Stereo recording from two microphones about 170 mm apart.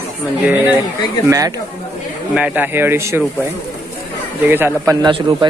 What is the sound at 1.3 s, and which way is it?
Speech, 20° right (ahead or behind).